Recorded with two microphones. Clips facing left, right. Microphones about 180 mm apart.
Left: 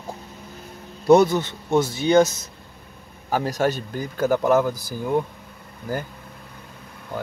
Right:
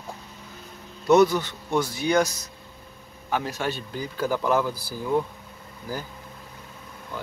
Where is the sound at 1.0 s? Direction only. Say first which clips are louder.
Left 3 dB; 30° left (ahead or behind).